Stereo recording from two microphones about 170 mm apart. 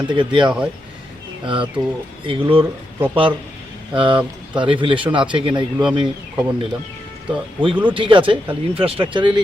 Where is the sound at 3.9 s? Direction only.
30° right (ahead or behind).